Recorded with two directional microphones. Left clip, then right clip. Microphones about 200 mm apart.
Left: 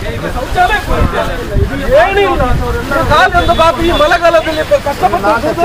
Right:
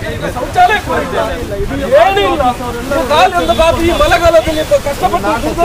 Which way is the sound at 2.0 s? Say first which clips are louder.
Even; 65° right (ahead or behind).